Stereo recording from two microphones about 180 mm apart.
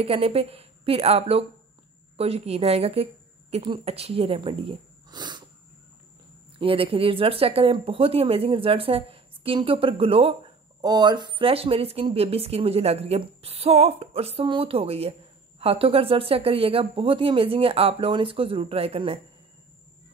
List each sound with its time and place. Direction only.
0.0 s a woman's voice: 30° right (ahead or behind)
6.6 s speech: 30° right (ahead or behind)